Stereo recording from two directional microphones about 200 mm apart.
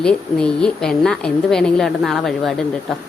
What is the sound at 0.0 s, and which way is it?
Speech, 5° left (ahead or behind).